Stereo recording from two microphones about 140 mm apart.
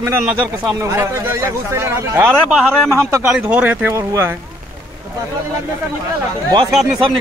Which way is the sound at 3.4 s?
10° right (ahead or behind).